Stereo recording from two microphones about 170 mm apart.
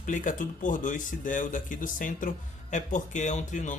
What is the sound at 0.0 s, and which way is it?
Speech, 50° left (ahead or behind).